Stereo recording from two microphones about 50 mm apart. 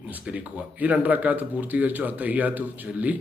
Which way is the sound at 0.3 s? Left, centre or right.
Right.